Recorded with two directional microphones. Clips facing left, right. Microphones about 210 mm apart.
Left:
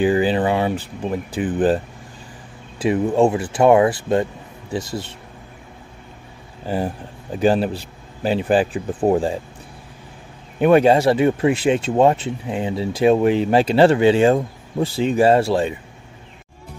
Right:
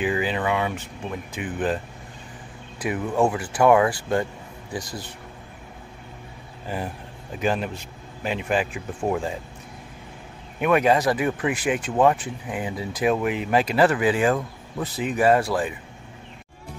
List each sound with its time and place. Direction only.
0.0 s speech: 30° left (ahead or behind)
2.8 s speech: 25° left (ahead or behind)
6.7 s speech: 30° left (ahead or behind)
10.6 s speech: 30° left (ahead or behind)